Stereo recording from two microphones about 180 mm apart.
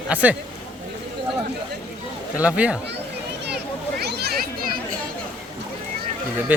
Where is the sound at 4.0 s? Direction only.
60° right (ahead or behind).